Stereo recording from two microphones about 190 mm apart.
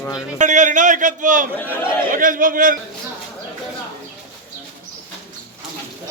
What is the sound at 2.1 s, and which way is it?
Speech, 45° right (ahead or behind).